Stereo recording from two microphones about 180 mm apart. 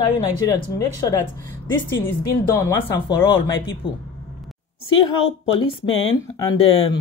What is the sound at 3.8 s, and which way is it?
Speech, 30° left (ahead or behind).